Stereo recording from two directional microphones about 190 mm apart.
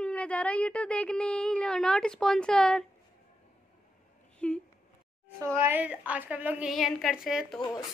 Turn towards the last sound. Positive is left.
turn(degrees=0)  # may be behind; listen again after turning